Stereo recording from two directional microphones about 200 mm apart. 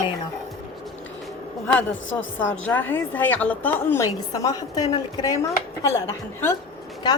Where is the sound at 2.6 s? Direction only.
10° left (ahead or behind).